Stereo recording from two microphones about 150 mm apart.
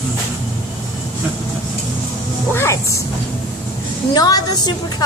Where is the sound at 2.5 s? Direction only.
20° left (ahead or behind).